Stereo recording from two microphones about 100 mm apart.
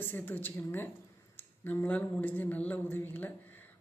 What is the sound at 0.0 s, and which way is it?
Speech, 20° left (ahead or behind).